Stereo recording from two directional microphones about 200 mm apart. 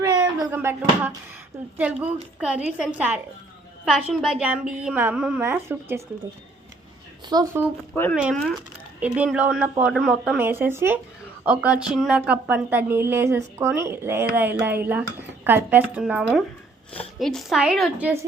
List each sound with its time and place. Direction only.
0.0 s a sound: 15° right (ahead or behind)
2.4 s a woman's voice: 5° right (ahead or behind)
7.3 s speech: 20° right (ahead or behind)
8.1 s a woman's voice: 5° right (ahead or behind)